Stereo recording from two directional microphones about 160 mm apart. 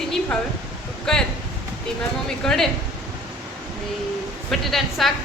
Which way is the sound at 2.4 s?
5° left (ahead or behind).